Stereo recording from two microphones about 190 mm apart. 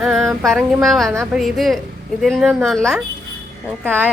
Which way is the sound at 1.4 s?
Centre (ahead or behind).